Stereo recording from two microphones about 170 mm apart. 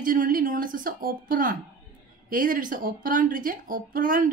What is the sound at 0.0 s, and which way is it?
A woman's voice, 55° right (ahead or behind).